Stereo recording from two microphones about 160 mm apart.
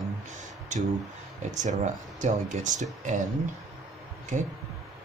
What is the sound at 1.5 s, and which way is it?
Speech, 50° right (ahead or behind).